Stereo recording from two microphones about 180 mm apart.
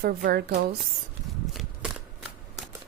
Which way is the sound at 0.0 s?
55° right (ahead or behind).